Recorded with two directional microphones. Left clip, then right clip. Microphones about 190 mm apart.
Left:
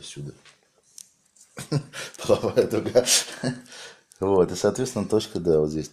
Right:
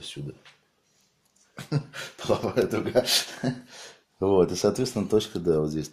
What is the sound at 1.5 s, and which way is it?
Speech, 40° left (ahead or behind).